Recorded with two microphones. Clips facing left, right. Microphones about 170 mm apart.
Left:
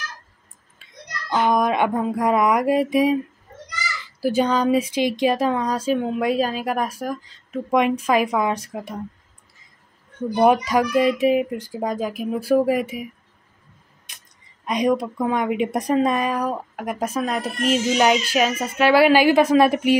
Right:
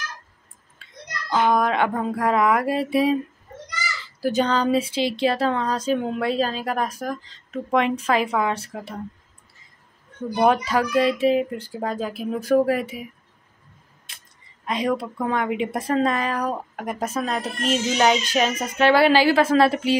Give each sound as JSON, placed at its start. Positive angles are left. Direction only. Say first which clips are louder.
{"t": 1.3, "sound": "speech", "louder": "left 1 dB", "side_deg": 15}
{"t": 10.4, "sound": "speech", "louder": "left 2 dB", "side_deg": 15}
{"t": 14.7, "sound": "speech", "louder": "left 4 dB", "side_deg": 15}